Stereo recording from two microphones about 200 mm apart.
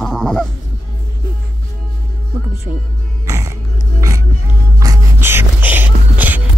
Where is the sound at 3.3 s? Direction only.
15° right (ahead or behind).